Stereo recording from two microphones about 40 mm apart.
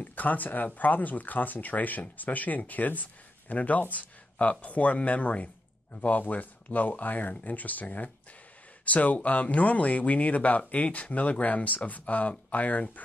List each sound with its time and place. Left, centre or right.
0.0 s speech: left